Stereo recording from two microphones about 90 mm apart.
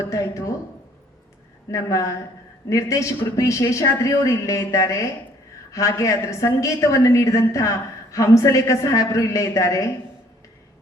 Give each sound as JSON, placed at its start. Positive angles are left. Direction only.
{"t": 0.0, "sound": "a woman's voice", "side_deg": 35}
{"t": 1.7, "sound": "a woman's voice", "side_deg": 35}